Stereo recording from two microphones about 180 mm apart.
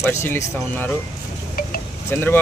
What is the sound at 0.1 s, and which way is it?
Speech, 15° left (ahead or behind).